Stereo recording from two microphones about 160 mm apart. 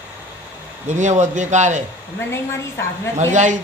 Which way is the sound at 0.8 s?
50° right (ahead or behind).